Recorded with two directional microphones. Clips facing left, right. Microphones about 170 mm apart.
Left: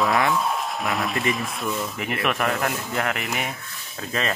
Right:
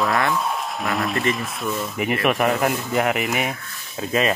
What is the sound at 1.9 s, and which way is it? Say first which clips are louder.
Speech: right 5 dB; 10° right (ahead or behind).